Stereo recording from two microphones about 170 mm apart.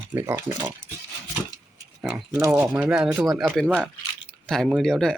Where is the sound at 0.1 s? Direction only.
15° right (ahead or behind).